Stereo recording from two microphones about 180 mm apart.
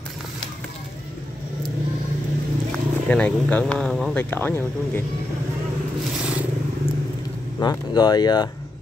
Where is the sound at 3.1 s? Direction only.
5° left (ahead or behind).